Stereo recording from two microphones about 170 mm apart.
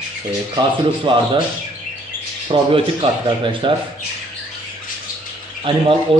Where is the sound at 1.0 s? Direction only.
25° right (ahead or behind).